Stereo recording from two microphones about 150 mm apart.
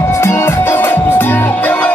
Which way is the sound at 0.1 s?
20° left (ahead or behind).